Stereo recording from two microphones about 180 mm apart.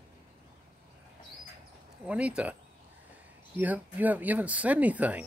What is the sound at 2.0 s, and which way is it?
Speech, 5° right (ahead or behind).